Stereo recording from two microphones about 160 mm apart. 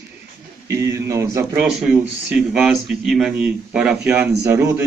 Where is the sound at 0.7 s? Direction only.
20° right (ahead or behind).